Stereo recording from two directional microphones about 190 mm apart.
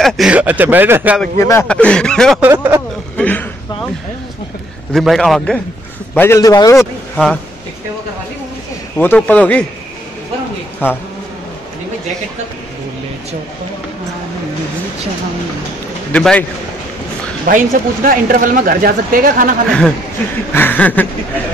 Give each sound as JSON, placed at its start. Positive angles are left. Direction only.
{"t": 0.0, "sound": "speech", "side_deg": -5}
{"t": 1.2, "sound": "speech", "side_deg": 15}
{"t": 2.4, "sound": "speech", "side_deg": -10}
{"t": 3.2, "sound": "a sound", "side_deg": 10}
{"t": 4.9, "sound": "speech", "side_deg": 0}
{"t": 6.1, "sound": "speech", "side_deg": 15}
{"t": 6.8, "sound": "speech", "side_deg": 0}
{"t": 8.9, "sound": "speech", "side_deg": 10}
{"t": 10.8, "sound": "speech", "side_deg": 10}
{"t": 16.1, "sound": "speech", "side_deg": 5}
{"t": 17.5, "sound": "speech", "side_deg": -45}
{"t": 20.5, "sound": "speech", "side_deg": 10}